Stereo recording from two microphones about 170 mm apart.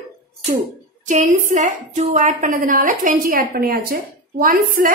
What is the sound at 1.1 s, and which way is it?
A woman's voice, 45° right (ahead or behind).